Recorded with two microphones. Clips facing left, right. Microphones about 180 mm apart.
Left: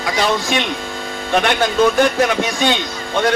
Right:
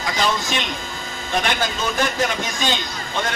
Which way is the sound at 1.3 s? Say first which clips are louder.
Left 7 dB; 60° left (ahead or behind).